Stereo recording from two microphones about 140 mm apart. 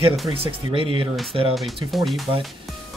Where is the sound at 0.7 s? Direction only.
40° right (ahead or behind).